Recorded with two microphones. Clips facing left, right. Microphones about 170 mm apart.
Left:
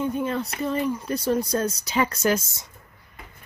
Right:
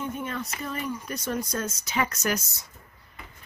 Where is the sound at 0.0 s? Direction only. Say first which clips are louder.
Left 7 dB; 30° left (ahead or behind).